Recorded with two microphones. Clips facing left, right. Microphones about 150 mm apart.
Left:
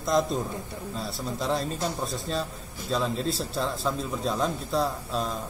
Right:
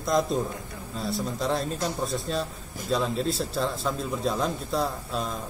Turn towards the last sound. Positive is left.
turn(degrees=0)  # may be behind; listen again after turning